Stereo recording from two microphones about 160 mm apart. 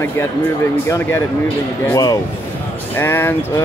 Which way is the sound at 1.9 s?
20° left (ahead or behind).